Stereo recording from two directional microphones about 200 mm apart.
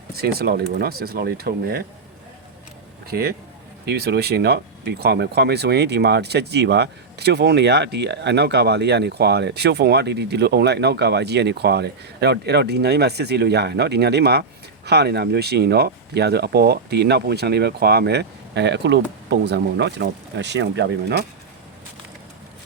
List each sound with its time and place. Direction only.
0.1 s speech: 50° right (ahead or behind)
3.1 s speech: 50° right (ahead or behind)